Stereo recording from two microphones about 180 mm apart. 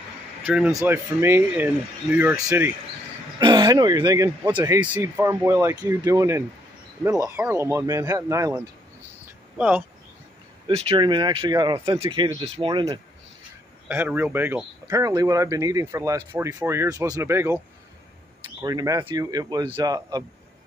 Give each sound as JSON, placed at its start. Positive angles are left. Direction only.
{"t": 0.5, "sound": "speech", "side_deg": -5}
{"t": 4.9, "sound": "speech", "side_deg": -10}
{"t": 9.6, "sound": "speech", "side_deg": -5}
{"t": 10.7, "sound": "speech", "side_deg": -30}
{"t": 13.8, "sound": "speech", "side_deg": -10}
{"t": 18.6, "sound": "speech", "side_deg": -20}